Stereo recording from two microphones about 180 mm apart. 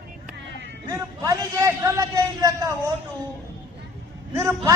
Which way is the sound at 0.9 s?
20° right (ahead or behind).